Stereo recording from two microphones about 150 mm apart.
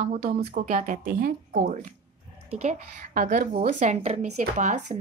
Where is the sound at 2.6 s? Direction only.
50° right (ahead or behind).